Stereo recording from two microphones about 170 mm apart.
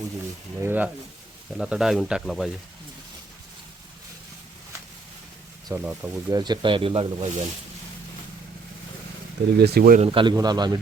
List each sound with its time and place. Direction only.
0.6 s speech: 10° right (ahead or behind)
5.6 s speech: 15° right (ahead or behind)
6.3 s speech: 25° right (ahead or behind)
9.6 s speech: 70° right (ahead or behind)
10.0 s speech: 30° right (ahead or behind)